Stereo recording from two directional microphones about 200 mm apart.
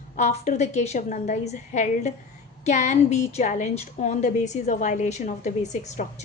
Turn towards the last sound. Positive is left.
turn(degrees=35)  # may be behind; listen again after turning